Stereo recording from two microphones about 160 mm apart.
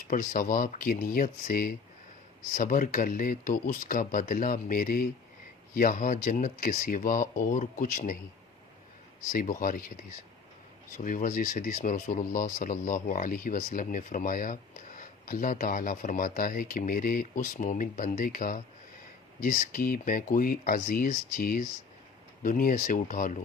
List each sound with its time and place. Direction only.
0.1 s speech: 55° left (ahead or behind)
9.3 s speech: 60° left (ahead or behind)
10.9 s speech: 55° left (ahead or behind)